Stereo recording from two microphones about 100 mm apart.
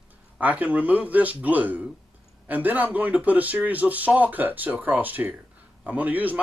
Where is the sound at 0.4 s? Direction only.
15° right (ahead or behind).